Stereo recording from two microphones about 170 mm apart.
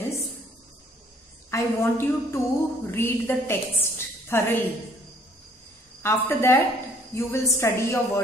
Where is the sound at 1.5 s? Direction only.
15° left (ahead or behind).